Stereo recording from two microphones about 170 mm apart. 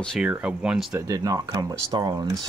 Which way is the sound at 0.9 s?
20° right (ahead or behind).